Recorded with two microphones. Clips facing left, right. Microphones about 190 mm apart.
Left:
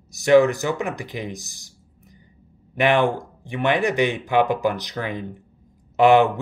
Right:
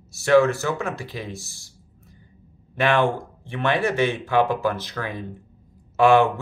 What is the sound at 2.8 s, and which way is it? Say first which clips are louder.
Speech: left 2 dB; 15° left (ahead or behind).